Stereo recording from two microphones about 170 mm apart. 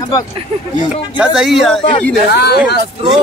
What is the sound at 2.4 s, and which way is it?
Speech, 70° left (ahead or behind).